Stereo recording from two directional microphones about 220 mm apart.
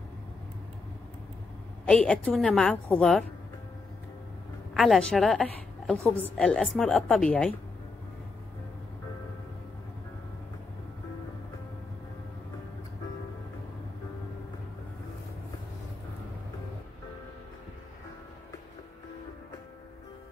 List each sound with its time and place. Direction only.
1.9 s a woman's voice: 5° left (ahead or behind)
4.7 s a woman's voice: centre (ahead or behind)